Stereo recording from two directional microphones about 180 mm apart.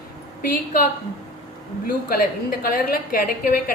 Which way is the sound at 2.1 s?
55° left (ahead or behind).